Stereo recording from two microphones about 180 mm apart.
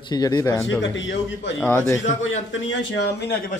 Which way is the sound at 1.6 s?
15° left (ahead or behind).